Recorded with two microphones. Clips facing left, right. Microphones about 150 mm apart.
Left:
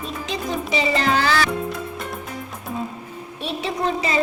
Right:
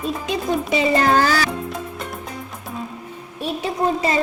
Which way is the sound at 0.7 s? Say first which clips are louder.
Right 3 dB; 50° right (ahead or behind).